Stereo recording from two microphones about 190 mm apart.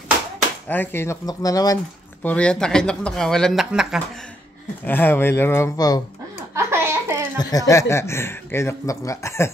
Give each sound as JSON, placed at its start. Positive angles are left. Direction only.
{"t": 0.7, "sound": "speech", "side_deg": 10}
{"t": 2.2, "sound": "speech", "side_deg": 5}
{"t": 4.8, "sound": "speech", "side_deg": 10}
{"t": 6.5, "sound": "a sound", "side_deg": -15}
{"t": 7.3, "sound": "speech", "side_deg": 20}